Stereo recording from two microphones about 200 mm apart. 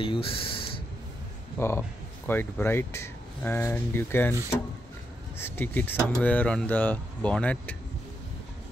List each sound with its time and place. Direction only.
0.0 s speech: 25° left (ahead or behind)
1.6 s speech: 10° left (ahead or behind)
5.4 s speech: 10° left (ahead or behind)